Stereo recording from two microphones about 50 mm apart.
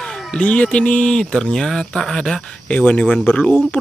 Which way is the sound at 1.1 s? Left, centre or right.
Centre.